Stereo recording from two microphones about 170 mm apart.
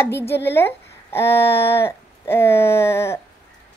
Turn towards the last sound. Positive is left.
turn(degrees=15)  # may be behind; listen again after turning